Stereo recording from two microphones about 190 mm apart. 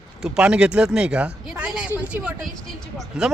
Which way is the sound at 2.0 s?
5° right (ahead or behind).